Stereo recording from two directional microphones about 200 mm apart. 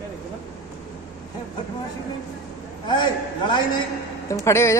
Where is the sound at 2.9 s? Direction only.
20° left (ahead or behind).